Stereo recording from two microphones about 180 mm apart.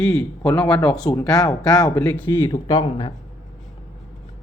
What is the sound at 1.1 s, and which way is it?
Speech, 15° left (ahead or behind).